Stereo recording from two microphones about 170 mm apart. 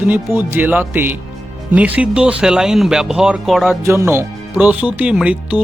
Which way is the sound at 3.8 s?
15° right (ahead or behind).